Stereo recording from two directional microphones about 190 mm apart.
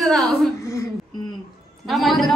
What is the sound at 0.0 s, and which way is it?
Speech, centre (ahead or behind).